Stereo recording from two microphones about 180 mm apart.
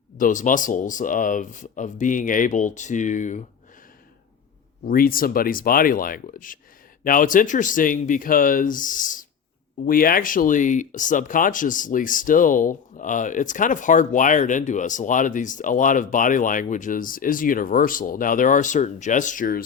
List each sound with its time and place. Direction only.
0.2 s speech: 45° left (ahead or behind)
4.9 s speech: 50° left (ahead or behind)